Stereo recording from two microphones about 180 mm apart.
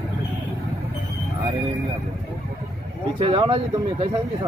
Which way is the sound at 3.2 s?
30° right (ahead or behind).